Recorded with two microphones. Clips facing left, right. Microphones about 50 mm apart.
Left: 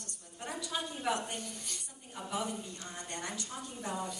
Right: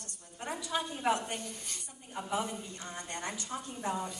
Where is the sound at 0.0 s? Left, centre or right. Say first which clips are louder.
Right 2 dB; right.